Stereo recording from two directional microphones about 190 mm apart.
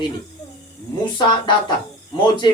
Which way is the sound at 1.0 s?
25° left (ahead or behind).